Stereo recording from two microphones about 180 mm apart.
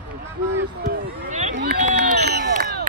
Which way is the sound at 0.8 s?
45° right (ahead or behind).